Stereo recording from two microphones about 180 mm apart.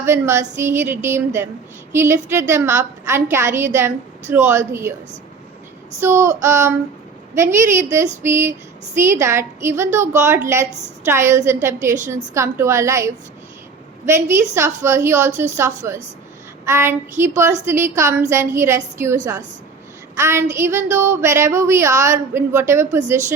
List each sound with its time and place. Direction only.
0.0 s a woman's voice: 15° right (ahead or behind)
6.0 s a woman's voice: 15° right (ahead or behind)
20.1 s a woman's voice: 15° right (ahead or behind)